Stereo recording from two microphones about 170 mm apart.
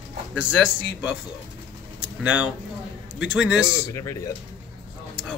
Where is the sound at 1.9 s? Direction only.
10° right (ahead or behind).